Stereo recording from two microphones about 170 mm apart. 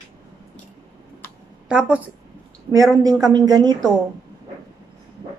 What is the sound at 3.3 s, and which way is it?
Speech, 25° right (ahead or behind).